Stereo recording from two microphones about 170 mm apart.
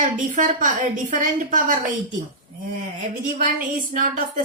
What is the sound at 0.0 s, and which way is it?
A woman's voice, 50° right (ahead or behind).